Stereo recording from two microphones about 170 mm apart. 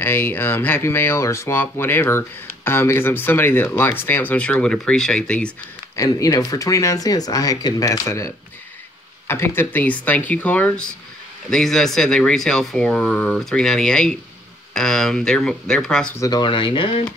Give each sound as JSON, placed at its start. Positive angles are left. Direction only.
{"t": 0.0, "sound": "speech", "side_deg": 10}
{"t": 5.9, "sound": "speech", "side_deg": 20}
{"t": 9.3, "sound": "speech", "side_deg": 15}
{"t": 16.2, "sound": "speech", "side_deg": 25}